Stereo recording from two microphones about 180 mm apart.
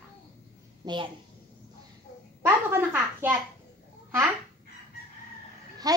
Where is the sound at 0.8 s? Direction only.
20° right (ahead or behind).